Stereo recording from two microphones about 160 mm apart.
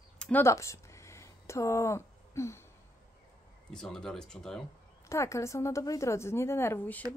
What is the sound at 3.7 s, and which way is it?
Speech, 5° left (ahead or behind).